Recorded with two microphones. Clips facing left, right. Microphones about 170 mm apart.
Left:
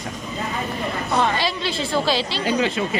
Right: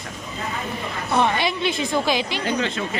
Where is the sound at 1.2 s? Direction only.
20° right (ahead or behind).